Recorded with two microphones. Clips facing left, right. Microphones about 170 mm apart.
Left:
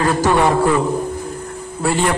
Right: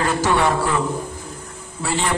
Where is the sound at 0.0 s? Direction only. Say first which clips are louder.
Left 4 dB; 45° left (ahead or behind).